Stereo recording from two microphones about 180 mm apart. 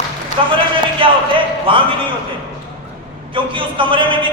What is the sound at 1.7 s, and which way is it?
Speech, 30° right (ahead or behind).